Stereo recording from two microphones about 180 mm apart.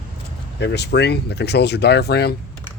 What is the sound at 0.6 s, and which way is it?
Speech, 70° left (ahead or behind).